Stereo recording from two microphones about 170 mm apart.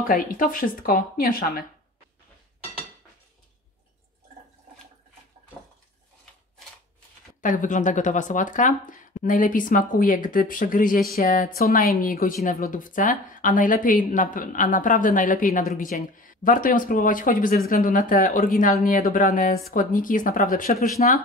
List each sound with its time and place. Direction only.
0.1 s speech: 50° left (ahead or behind)
7.4 s speech: 50° left (ahead or behind)